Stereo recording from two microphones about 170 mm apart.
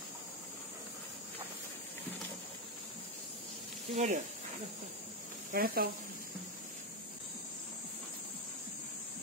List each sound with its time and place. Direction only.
3.9 s speech: 40° right (ahead or behind)
5.5 s speech: 60° right (ahead or behind)